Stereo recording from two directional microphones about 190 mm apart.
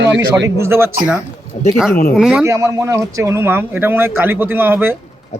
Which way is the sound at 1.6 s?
40° left (ahead or behind).